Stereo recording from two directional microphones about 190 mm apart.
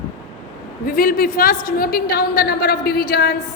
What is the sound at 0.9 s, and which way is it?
A woman's voice, 50° left (ahead or behind).